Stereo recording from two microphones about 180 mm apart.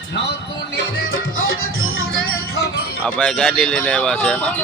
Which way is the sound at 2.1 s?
70° left (ahead or behind).